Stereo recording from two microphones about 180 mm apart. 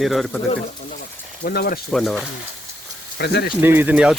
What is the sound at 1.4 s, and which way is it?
Speech, 55° left (ahead or behind).